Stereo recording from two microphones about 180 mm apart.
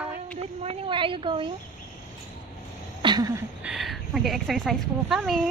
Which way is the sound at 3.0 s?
25° right (ahead or behind).